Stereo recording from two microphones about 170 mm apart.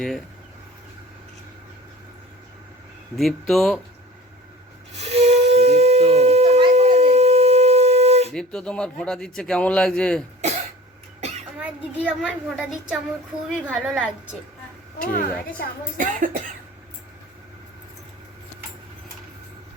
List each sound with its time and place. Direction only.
3.2 s a man's voice: centre (ahead or behind)
4.9 s a sound: 40° right (ahead or behind)
8.3 s a man's voice: 5° left (ahead or behind)
11.6 s a man's voice: 10° right (ahead or behind)
15.0 s a woman's voice: 55° left (ahead or behind)
16.0 s speech: 50° right (ahead or behind)